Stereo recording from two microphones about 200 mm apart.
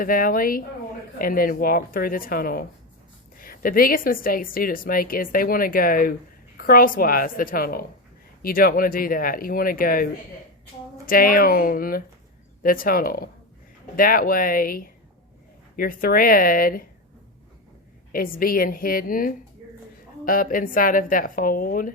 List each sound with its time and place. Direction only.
0.0 s a woman's voice: 45° left (ahead or behind)
18.1 s a woman's voice: 45° left (ahead or behind)